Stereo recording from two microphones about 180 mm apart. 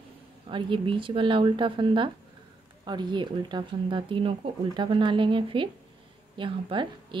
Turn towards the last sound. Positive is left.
turn(degrees=-25)  # may be behind; listen again after turning